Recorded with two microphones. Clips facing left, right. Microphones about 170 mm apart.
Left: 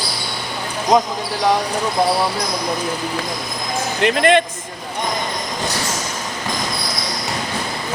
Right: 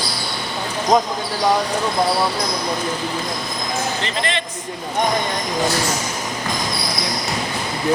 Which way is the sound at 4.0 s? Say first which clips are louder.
Left 10 dB; 55° left (ahead or behind).